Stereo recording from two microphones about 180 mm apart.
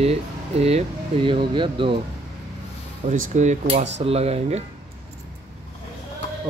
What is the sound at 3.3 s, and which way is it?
Speech, 40° right (ahead or behind).